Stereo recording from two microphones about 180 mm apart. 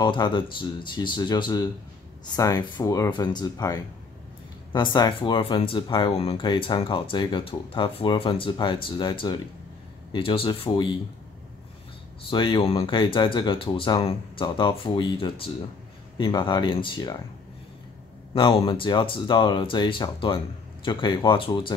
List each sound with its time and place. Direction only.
0.0 s speech: 25° left (ahead or behind)
4.9 s speech: 25° left (ahead or behind)
12.2 s speech: 25° left (ahead or behind)
18.3 s speech: 25° left (ahead or behind)